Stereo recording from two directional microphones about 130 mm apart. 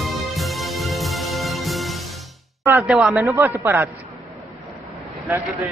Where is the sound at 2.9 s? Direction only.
5° right (ahead or behind).